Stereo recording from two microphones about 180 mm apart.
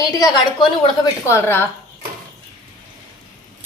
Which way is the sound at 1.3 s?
15° left (ahead or behind).